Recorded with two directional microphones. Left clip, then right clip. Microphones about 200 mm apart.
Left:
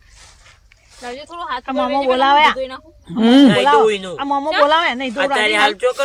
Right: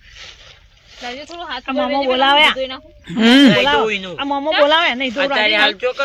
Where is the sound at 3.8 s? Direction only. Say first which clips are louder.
Left 3 dB; 35° left (ahead or behind).